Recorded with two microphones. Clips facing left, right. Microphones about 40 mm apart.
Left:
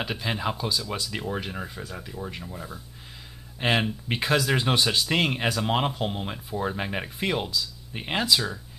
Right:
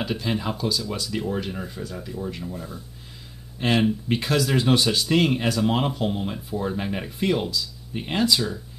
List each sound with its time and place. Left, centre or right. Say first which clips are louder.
0.0 s speech: right 2 dB; centre